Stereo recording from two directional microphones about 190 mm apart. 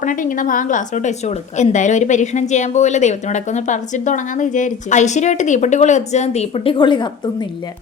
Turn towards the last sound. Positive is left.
turn(degrees=25)  # may be behind; listen again after turning